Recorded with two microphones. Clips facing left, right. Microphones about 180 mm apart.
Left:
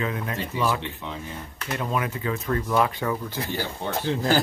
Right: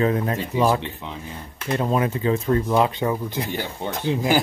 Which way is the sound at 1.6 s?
30° right (ahead or behind).